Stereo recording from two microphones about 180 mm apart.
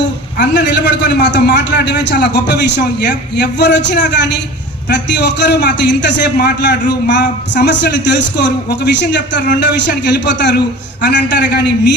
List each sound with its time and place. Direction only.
0.0 s a man's voice: 75° left (ahead or behind)